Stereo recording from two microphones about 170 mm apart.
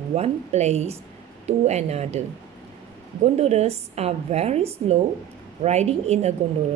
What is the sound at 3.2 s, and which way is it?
A woman's voice, 40° right (ahead or behind).